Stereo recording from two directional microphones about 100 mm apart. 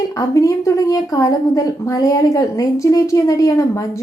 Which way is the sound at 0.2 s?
35° left (ahead or behind).